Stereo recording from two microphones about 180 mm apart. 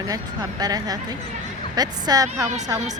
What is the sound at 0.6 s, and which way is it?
Speech, 20° right (ahead or behind).